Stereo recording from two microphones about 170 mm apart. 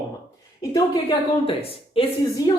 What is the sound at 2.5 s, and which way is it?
Speech, 20° left (ahead or behind).